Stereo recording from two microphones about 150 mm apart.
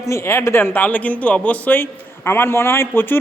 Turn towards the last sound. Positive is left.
turn(degrees=15)  # may be behind; listen again after turning